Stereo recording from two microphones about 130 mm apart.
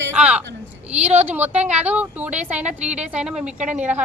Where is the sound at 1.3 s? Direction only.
15° right (ahead or behind).